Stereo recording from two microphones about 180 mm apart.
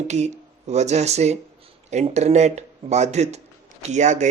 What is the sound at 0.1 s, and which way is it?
A man's voice, 40° right (ahead or behind).